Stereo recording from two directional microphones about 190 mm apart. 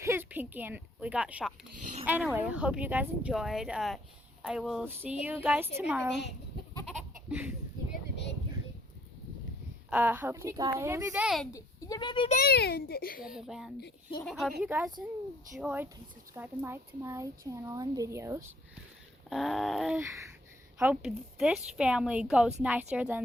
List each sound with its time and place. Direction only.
0.0 s a sound: 10° right (ahead or behind)
2.0 s a woman's voice: 10° right (ahead or behind)
6.1 s speech: 65° left (ahead or behind)
6.8 s goat: 5° right (ahead or behind)
8.1 s a sound: 65° left (ahead or behind)
9.9 s speech: 10° right (ahead or behind)
11.1 s a woman's voice: 5° right (ahead or behind)
11.5 s speech: 20° left (ahead or behind)
12.4 s a child's voice: 55° left (ahead or behind)
13.2 s a woman's voice: 5° right (ahead or behind)
19.3 s a woman's voice: centre (ahead or behind)